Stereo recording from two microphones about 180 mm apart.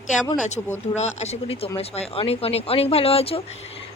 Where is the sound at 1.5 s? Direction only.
35° left (ahead or behind).